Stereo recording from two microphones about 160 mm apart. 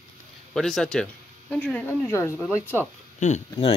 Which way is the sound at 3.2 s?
50° left (ahead or behind).